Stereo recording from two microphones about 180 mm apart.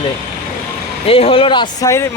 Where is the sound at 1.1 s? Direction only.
30° left (ahead or behind); by 2.1 s 15° left (ahead or behind).